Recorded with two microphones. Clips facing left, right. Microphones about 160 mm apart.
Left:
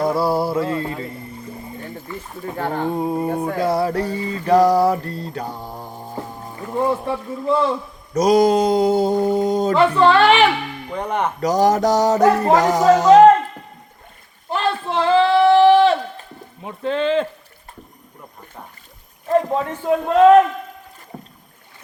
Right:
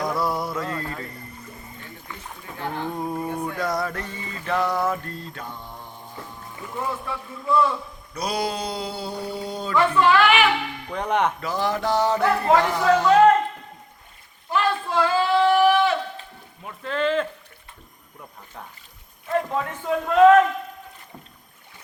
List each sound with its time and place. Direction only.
0.0 s mantra: 30° left (ahead or behind)
2.6 s speech: 50° left (ahead or behind)
2.9 s a sound: 25° left (ahead or behind)
8.1 s mantra: 45° left (ahead or behind)
9.7 s speech: 30° left (ahead or behind)
10.9 s speech: 10° left (ahead or behind)
11.3 s speech: 40° left (ahead or behind)
14.5 s a sound: 25° left (ahead or behind)
16.6 s speech: 30° left (ahead or behind)
19.8 s speech: 30° left (ahead or behind)